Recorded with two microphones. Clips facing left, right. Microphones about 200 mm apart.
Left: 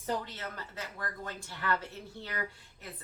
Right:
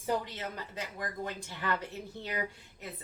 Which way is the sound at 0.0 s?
15° right (ahead or behind).